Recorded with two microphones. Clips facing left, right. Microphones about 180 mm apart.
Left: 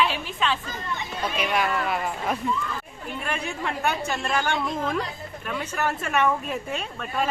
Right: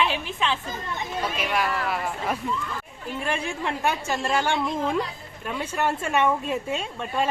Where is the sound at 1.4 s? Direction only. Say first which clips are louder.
Left 3 dB; centre (ahead or behind).